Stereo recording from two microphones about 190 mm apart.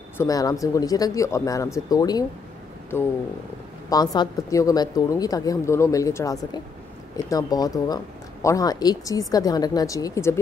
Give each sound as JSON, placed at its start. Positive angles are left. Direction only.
{"t": 0.2, "sound": "a woman's voice", "side_deg": 20}